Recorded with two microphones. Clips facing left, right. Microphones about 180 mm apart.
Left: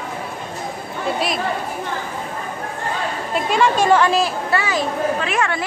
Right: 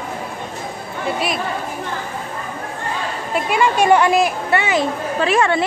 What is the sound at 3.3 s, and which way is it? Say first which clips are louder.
A woman's voice: even; 10° right (ahead or behind).